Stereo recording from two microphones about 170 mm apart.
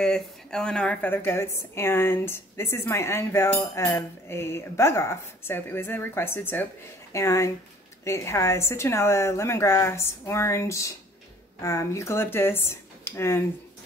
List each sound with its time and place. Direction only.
0.0 s a woman's voice: 5° left (ahead or behind)